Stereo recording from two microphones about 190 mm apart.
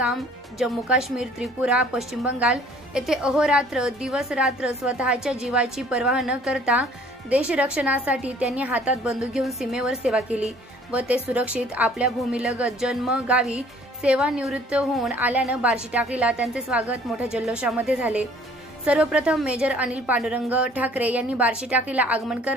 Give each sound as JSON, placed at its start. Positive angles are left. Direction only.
{"t": 0.6, "sound": "a woman's voice", "side_deg": 0}